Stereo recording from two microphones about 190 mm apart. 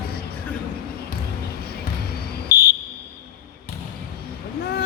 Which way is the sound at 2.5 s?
55° left (ahead or behind).